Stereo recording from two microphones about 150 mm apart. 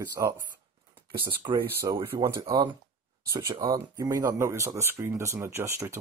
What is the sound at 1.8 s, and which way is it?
Speech, 20° right (ahead or behind).